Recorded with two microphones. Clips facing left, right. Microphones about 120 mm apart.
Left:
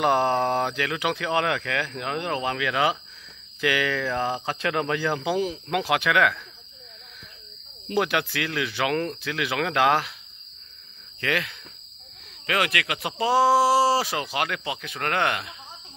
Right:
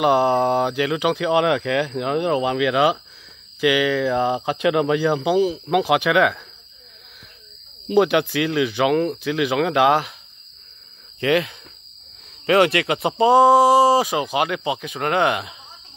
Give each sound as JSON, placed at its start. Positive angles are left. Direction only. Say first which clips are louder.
{"t": 0.0, "sound": "speech", "louder": "right 5 dB", "side_deg": -10}
{"t": 7.9, "sound": "speech", "louder": "right 8 dB", "side_deg": -15}
{"t": 11.1, "sound": "speech", "louder": "right 8 dB", "side_deg": -20}